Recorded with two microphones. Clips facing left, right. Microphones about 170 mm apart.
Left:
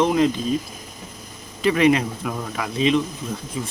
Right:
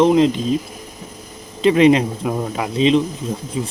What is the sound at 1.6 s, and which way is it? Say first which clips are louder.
Speech: right 5 dB; 25° right (ahead or behind).